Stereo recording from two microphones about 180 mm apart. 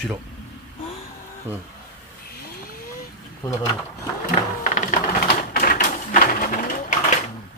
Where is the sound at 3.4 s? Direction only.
20° left (ahead or behind).